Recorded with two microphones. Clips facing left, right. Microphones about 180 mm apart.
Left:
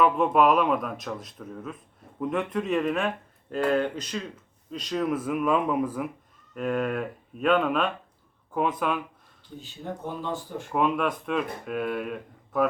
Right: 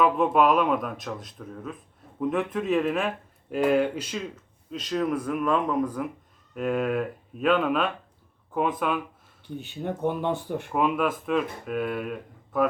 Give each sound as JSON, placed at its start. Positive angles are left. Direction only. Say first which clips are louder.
{"t": 0.0, "sound": "speech", "louder": "even", "side_deg": 0}
{"t": 9.6, "sound": "speech", "louder": "right 6 dB", "side_deg": -65}
{"t": 10.7, "sound": "speech", "louder": "even", "side_deg": 0}